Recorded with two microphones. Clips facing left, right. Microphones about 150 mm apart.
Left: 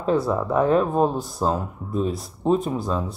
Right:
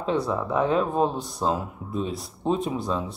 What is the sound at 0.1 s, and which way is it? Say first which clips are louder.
Speech: left 4 dB; 5° left (ahead or behind).